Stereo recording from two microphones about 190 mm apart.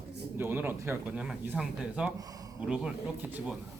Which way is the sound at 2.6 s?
5° right (ahead or behind).